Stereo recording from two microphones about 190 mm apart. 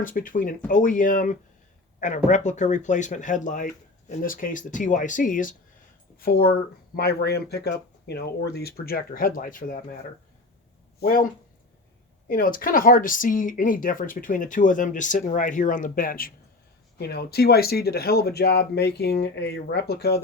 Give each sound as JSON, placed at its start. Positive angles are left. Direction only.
{"t": 0.0, "sound": "speech", "side_deg": 45}
{"t": 11.0, "sound": "speech", "side_deg": 50}
{"t": 12.3, "sound": "speech", "side_deg": 45}